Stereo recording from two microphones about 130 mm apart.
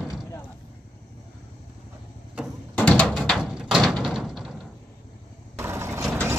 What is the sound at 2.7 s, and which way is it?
Music, 10° left (ahead or behind).